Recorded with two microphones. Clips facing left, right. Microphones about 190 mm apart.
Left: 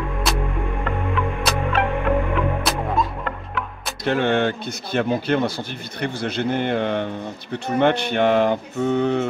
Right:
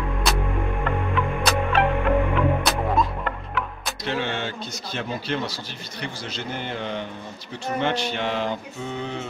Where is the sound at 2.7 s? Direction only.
Centre (ahead or behind).